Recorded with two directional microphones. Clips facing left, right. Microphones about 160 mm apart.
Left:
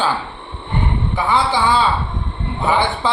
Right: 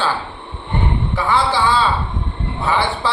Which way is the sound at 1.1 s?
20° left (ahead or behind).